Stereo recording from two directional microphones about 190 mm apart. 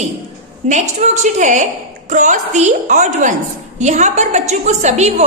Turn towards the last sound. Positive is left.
turn(degrees=-35)  # may be behind; listen again after turning